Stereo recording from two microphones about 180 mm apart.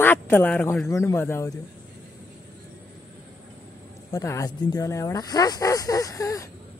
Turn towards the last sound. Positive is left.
turn(degrees=20)  # may be behind; listen again after turning